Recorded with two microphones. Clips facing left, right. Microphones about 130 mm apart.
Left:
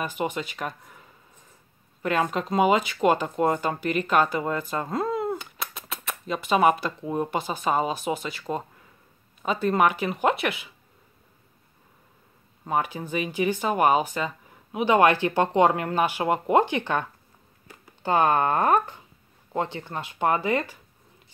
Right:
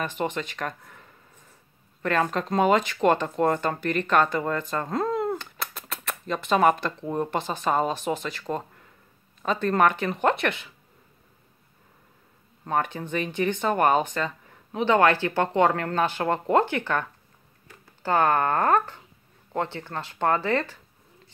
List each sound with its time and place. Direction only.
0.0 s speech: 10° left (ahead or behind)
2.0 s speech: 10° left (ahead or behind)
12.6 s speech: 10° left (ahead or behind)